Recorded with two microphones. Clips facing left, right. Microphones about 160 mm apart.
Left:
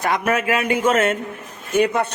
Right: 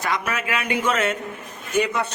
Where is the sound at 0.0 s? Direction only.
55° left (ahead or behind).